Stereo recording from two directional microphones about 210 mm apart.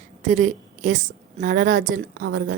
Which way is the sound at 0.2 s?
40° right (ahead or behind).